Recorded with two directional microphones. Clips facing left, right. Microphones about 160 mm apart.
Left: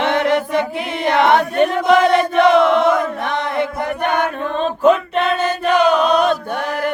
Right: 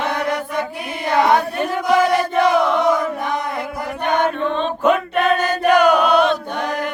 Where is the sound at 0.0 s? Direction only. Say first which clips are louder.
Left 5 dB; 25° left (ahead or behind).